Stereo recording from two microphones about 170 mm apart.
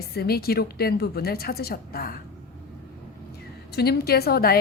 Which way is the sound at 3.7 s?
70° left (ahead or behind).